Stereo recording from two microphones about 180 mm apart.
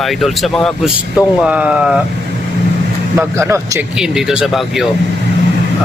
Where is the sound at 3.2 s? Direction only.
15° right (ahead or behind).